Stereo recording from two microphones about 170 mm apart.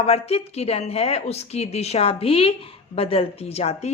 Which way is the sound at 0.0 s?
35° left (ahead or behind).